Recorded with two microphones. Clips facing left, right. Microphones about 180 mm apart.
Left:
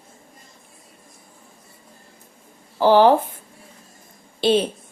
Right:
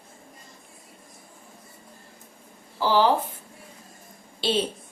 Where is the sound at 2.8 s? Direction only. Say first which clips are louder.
Left 7 dB; 55° left (ahead or behind).